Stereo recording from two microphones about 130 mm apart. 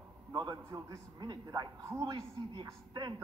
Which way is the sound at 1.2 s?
30° right (ahead or behind).